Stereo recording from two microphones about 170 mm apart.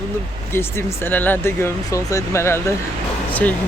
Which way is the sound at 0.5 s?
15° left (ahead or behind).